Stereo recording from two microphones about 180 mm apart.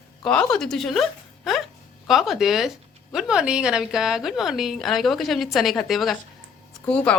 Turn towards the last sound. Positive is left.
turn(degrees=5)  # may be behind; listen again after turning